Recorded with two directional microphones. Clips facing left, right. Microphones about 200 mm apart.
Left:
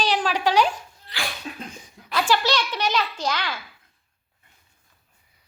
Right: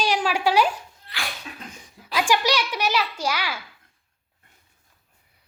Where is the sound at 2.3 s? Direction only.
10° right (ahead or behind).